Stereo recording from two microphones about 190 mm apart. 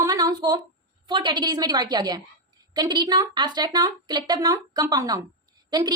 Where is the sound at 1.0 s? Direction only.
25° right (ahead or behind).